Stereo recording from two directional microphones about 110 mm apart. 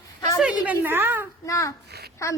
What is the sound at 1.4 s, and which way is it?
Speech, 30° left (ahead or behind).